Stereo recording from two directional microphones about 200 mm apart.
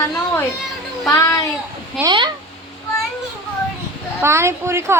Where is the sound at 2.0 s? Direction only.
20° right (ahead or behind).